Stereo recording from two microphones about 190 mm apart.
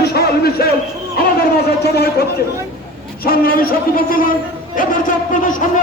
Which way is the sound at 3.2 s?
50° left (ahead or behind).